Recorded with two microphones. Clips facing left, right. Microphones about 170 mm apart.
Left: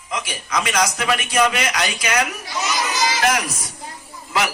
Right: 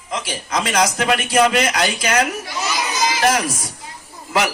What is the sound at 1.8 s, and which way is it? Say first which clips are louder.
A man's voice: right 3 dB; 40° right (ahead or behind).